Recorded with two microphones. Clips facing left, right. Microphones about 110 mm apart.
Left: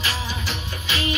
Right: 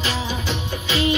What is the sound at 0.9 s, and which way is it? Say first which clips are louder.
Music: right 6 dB; 25° right (ahead or behind).